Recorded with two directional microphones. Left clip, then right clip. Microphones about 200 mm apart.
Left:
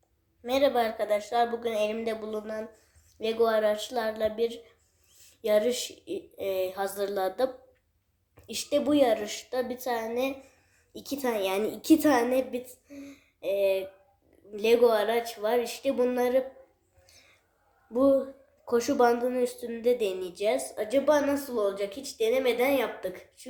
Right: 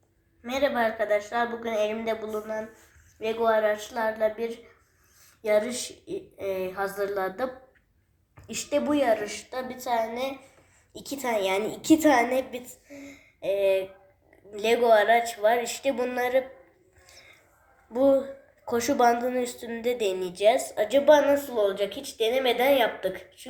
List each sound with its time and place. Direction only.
0.4 s speech: 40° left (ahead or behind)
8.5 s a woman's voice: 40° left (ahead or behind); by 16.4 s 20° left (ahead or behind)
17.9 s speech: 20° left (ahead or behind)